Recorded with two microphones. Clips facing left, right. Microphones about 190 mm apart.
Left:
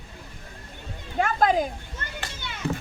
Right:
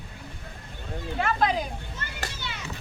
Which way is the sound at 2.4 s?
50° left (ahead or behind).